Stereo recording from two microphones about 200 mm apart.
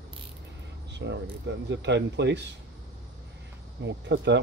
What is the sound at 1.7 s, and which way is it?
Speech, 60° right (ahead or behind).